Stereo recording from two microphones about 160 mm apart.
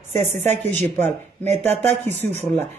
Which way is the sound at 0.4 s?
10° left (ahead or behind).